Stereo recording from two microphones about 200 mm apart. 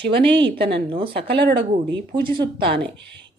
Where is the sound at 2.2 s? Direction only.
25° right (ahead or behind).